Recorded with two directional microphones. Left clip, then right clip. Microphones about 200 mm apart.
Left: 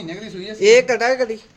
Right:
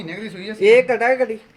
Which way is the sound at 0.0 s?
35° right (ahead or behind).